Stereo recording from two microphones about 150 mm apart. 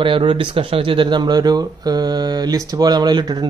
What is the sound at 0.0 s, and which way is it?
Speech, 35° right (ahead or behind).